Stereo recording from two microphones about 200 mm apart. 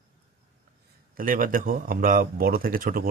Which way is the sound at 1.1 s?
45° right (ahead or behind).